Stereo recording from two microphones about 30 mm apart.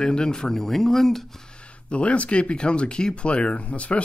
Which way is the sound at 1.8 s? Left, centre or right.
Left.